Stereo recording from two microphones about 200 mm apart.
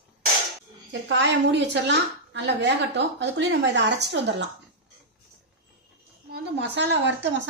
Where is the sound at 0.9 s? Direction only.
65° right (ahead or behind).